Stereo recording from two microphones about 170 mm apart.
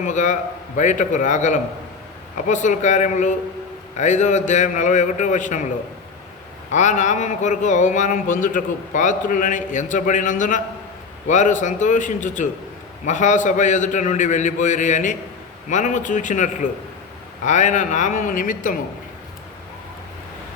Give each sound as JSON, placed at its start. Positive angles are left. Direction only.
{"t": 0.0, "sound": "a man's voice", "side_deg": 45}
{"t": 6.7, "sound": "a man's voice", "side_deg": 45}